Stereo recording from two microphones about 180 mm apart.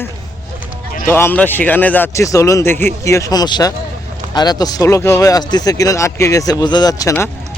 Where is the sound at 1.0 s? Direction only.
10° left (ahead or behind).